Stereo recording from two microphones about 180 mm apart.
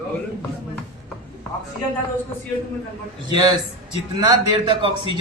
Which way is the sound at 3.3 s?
25° right (ahead or behind).